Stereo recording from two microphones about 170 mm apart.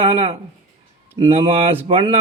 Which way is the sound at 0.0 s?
35° right (ahead or behind).